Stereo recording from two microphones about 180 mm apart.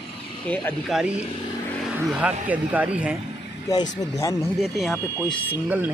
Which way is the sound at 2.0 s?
5° right (ahead or behind).